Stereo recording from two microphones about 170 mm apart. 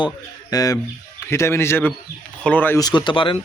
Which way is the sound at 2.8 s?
25° left (ahead or behind).